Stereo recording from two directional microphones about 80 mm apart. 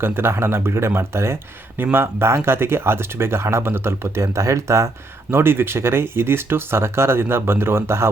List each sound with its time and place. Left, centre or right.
0.0 s speech: right
5.3 s speech: right